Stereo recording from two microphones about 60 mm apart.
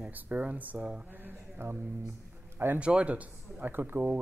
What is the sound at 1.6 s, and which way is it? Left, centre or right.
Speech, right.